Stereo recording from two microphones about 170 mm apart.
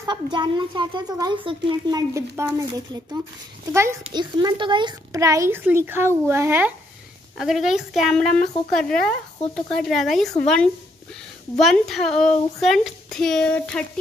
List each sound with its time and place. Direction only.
0.0 s a woman's voice: 25° right (ahead or behind)
7.3 s a woman's voice: centre (ahead or behind)